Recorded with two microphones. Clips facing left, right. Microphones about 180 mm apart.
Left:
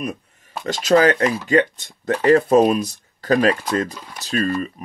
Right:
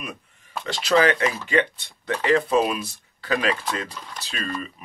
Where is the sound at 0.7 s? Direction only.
45° left (ahead or behind).